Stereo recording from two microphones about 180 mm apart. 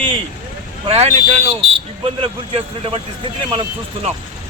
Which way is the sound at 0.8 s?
35° right (ahead or behind).